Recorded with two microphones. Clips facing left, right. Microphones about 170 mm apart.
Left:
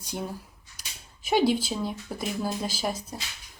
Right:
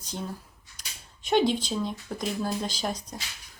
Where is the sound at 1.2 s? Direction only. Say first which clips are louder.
Left 1 dB; 5° left (ahead or behind).